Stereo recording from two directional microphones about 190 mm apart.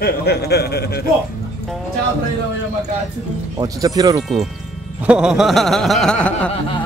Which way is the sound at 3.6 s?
20° right (ahead or behind).